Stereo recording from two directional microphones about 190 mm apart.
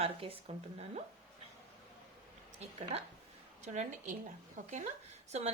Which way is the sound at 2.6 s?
35° right (ahead or behind).